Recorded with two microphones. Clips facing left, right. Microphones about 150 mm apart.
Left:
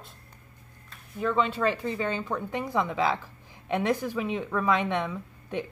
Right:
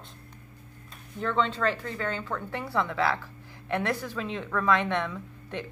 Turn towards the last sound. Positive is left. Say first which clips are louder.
# left 3 dB
turn(degrees=15)  # may be behind; listen again after turning